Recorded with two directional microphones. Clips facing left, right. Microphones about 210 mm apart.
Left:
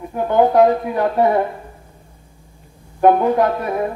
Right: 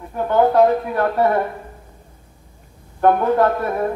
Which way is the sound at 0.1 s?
15° left (ahead or behind).